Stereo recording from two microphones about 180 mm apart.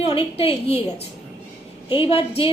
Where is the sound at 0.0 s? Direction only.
30° left (ahead or behind).